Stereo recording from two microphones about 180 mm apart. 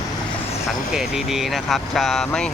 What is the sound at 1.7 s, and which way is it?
Speech, centre (ahead or behind).